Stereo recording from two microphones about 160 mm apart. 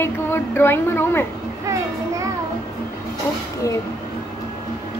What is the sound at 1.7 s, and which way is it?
Speech, 20° right (ahead or behind).